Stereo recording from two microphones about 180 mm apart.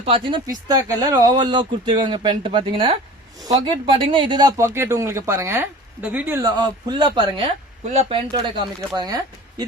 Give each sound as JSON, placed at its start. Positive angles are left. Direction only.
{"t": 0.0, "sound": "speech", "side_deg": -30}
{"t": 6.4, "sound": "speech", "side_deg": -25}